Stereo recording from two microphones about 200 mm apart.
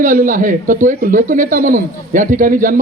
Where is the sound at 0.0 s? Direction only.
40° right (ahead or behind).